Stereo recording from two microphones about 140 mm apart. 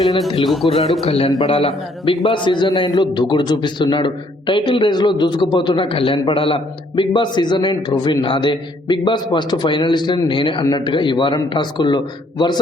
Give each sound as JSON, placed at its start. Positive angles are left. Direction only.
{"t": 0.4, "sound": "a man's voice", "side_deg": 0}
{"t": 1.0, "sound": "a man's voice", "side_deg": 45}
{"t": 2.3, "sound": "a man's voice", "side_deg": 35}